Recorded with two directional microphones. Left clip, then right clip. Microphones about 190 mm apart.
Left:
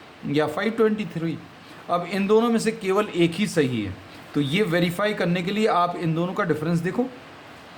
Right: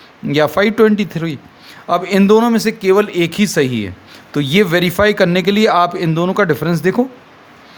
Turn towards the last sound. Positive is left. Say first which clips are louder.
# right 10 dB
turn(degrees=-50)  # may be behind; listen again after turning